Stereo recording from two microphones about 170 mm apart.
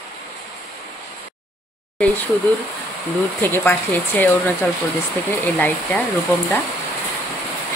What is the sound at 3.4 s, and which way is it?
Speech, 10° left (ahead or behind).